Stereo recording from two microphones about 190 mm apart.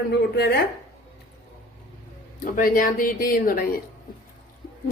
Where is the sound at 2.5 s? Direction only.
45° left (ahead or behind).